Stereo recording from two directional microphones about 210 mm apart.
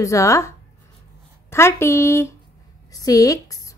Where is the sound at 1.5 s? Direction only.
10° left (ahead or behind).